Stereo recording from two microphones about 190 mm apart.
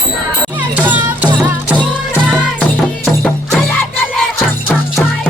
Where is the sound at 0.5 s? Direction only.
10° right (ahead or behind).